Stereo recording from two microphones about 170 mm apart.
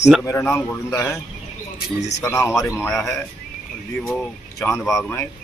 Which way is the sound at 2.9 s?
Centre (ahead or behind).